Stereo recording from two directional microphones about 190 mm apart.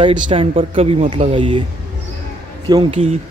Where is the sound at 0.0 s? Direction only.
30° right (ahead or behind).